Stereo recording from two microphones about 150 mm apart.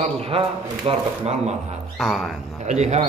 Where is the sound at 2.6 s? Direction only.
50° right (ahead or behind).